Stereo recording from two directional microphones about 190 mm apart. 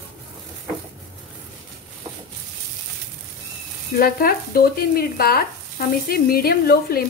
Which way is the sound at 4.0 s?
50° left (ahead or behind).